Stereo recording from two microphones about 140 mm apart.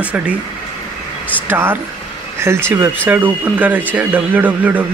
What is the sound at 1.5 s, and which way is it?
Speech, 15° right (ahead or behind).